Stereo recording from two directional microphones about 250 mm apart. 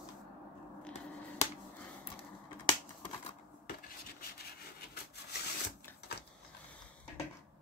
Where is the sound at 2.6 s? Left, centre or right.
Centre.